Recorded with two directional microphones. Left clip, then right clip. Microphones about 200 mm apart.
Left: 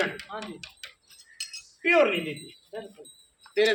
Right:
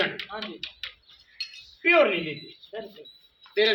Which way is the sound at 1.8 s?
Centre (ahead or behind).